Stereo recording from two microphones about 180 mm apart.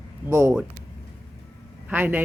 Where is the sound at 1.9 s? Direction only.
10° right (ahead or behind).